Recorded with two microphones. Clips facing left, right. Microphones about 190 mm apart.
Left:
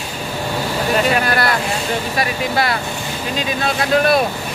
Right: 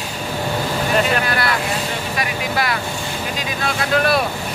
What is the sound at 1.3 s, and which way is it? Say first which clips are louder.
Speech: left 2 dB; 40° left (ahead or behind).